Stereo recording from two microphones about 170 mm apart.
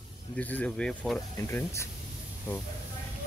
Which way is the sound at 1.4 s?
15° left (ahead or behind).